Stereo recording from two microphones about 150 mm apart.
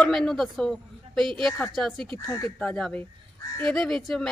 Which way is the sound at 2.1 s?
15° left (ahead or behind).